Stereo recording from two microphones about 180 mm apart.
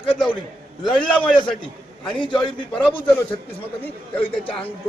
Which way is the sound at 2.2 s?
25° left (ahead or behind).